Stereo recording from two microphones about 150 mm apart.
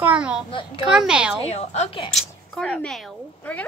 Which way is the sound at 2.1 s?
5° left (ahead or behind).